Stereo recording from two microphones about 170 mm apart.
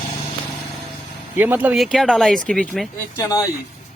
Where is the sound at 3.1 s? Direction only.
20° left (ahead or behind).